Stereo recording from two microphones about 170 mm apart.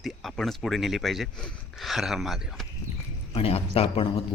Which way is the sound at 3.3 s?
35° left (ahead or behind).